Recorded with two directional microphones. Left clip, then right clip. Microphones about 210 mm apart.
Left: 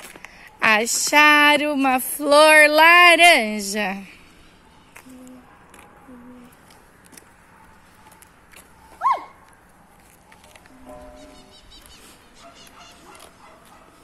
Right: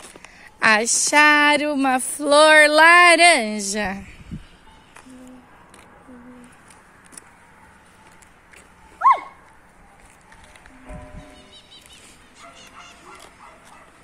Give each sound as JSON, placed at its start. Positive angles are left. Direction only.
{"t": 0.2, "sound": "speech", "side_deg": 0}